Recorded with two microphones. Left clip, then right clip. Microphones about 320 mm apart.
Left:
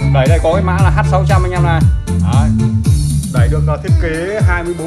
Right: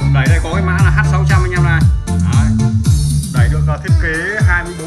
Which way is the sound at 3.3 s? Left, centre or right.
Centre.